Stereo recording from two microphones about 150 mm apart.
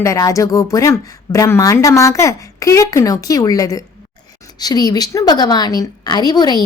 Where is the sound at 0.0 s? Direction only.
20° left (ahead or behind).